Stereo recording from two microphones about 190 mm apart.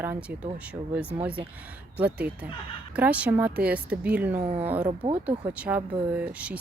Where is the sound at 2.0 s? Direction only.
5° right (ahead or behind).